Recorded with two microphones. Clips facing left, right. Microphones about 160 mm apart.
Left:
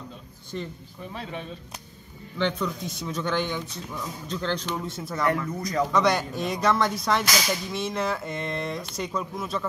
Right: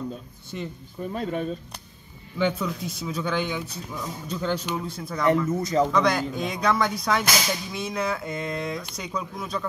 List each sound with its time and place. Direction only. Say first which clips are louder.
0.5 s speech: even; 10° right (ahead or behind)
1.1 s speech: right 8 dB; 45° right (ahead or behind)
2.3 s speech: right 2 dB; 5° right (ahead or behind)
5.5 s speech: right 4 dB; 25° right (ahead or behind)
5.9 s speech: even; centre (ahead or behind)